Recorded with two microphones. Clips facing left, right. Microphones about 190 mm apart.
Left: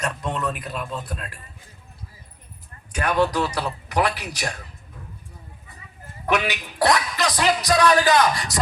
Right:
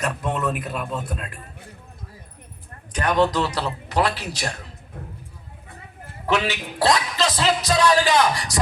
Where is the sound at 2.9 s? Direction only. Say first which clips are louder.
Right 1 dB; 10° left (ahead or behind).